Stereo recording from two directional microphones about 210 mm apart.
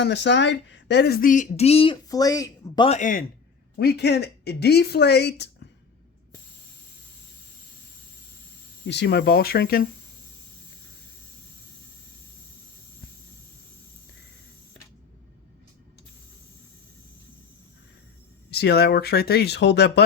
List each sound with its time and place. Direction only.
0.0 s speech: 55° left (ahead or behind); by 3.0 s 25° left (ahead or behind)
3.0 s speech: 40° left (ahead or behind)
3.8 s speech: 50° left (ahead or behind)
8.9 s speech: 55° left (ahead or behind)
18.5 s speech: 50° left (ahead or behind)